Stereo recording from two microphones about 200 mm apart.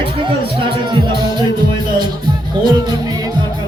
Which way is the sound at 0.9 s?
25° right (ahead or behind).